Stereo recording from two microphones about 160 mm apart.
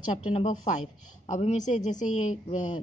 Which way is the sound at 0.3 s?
35° left (ahead or behind).